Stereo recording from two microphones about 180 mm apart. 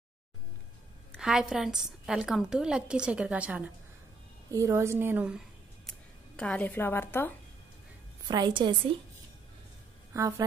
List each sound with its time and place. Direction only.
1.1 s a woman's voice: 5° right (ahead or behind)
4.5 s a woman's voice: 20° right (ahead or behind)
5.9 s speech: 5° left (ahead or behind)
8.3 s a woman's voice: 25° right (ahead or behind)
10.1 s a woman's voice: 15° right (ahead or behind)